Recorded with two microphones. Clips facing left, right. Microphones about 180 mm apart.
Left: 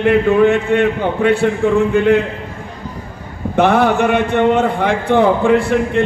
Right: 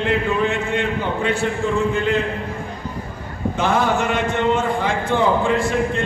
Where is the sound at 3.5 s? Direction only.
65° left (ahead or behind).